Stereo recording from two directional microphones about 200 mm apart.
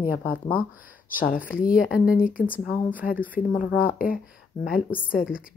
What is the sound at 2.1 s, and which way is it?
Speech, 45° left (ahead or behind).